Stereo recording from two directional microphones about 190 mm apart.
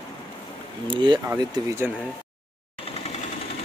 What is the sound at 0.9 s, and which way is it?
Speech, 25° right (ahead or behind).